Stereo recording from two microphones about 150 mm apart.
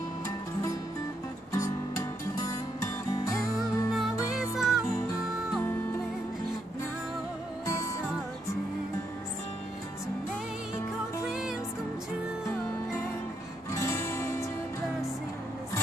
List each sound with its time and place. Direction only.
1.5 s music: 20° left (ahead or behind)
3.9 s music: centre (ahead or behind)
7.6 s music: 20° left (ahead or behind)
11.2 s music: 5° right (ahead or behind)
13.7 s music: 20° left (ahead or behind)